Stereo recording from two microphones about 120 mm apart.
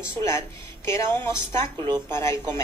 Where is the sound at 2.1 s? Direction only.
20° left (ahead or behind).